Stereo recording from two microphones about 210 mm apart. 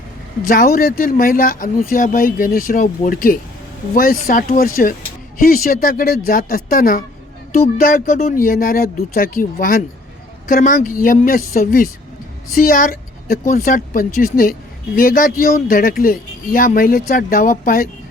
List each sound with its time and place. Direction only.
0.4 s speech: 45° left (ahead or behind)